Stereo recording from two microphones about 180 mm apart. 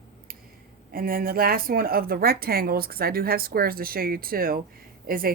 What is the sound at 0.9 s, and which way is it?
A woman's voice, 55° right (ahead or behind).